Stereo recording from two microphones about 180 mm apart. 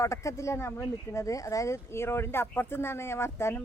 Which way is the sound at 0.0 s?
15° left (ahead or behind).